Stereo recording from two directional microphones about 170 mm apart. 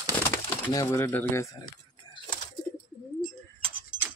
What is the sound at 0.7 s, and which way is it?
Speech, 15° left (ahead or behind).